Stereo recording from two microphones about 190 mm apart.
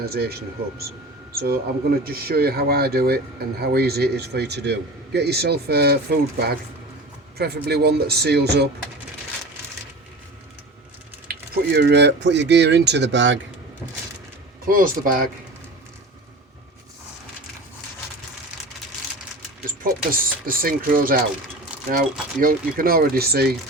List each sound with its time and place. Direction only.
0.0 s a man's voice: 55° right (ahead or behind)
11.3 s a man's voice: 60° right (ahead or behind)
14.6 s speech: 45° right (ahead or behind)
19.8 s speech: 50° right (ahead or behind)